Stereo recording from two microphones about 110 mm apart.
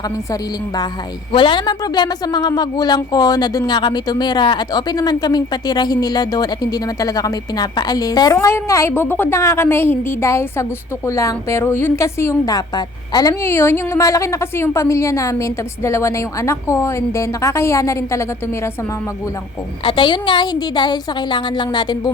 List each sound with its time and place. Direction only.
1.3 s a woman's voice: 50° left (ahead or behind)
13.4 s a woman's voice: 20° left (ahead or behind)
19.8 s a woman's voice: 50° left (ahead or behind)